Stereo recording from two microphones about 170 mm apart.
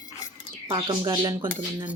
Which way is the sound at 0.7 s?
30° right (ahead or behind).